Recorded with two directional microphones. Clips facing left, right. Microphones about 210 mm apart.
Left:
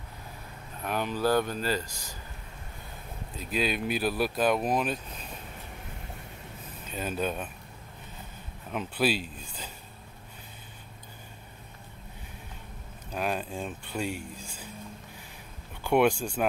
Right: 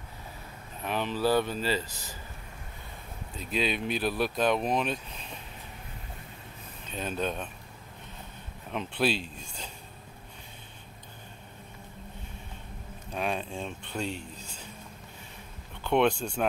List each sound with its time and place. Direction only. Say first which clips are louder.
0.8 s speech: even; 5° left (ahead or behind)
3.3 s speech: even; 5° left (ahead or behind)
6.9 s speech: left 1 dB; 5° left (ahead or behind)
8.7 s speech: left 1 dB; 5° left (ahead or behind)
13.1 s speech: left 1 dB; centre (ahead or behind)
15.8 s speech: left 1 dB; 10° left (ahead or behind)